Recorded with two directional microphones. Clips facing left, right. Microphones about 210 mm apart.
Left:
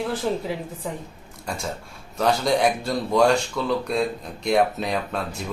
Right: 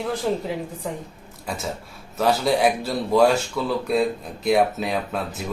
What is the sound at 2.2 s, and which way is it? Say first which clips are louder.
Speech: right 1 dB; 5° right (ahead or behind).